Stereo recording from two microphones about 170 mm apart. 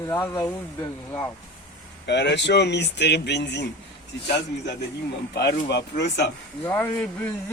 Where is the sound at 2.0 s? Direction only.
90° left.